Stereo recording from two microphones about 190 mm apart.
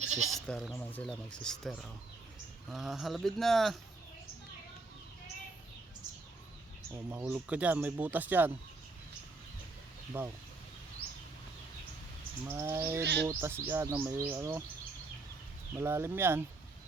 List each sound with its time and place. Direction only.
0.0 s goat: 35° right (ahead or behind)
0.3 s speech: centre (ahead or behind)
6.9 s speech: 10° right (ahead or behind)
10.1 s speech: 10° right (ahead or behind)
12.5 s speech: 15° right (ahead or behind)
15.8 s speech: 15° right (ahead or behind)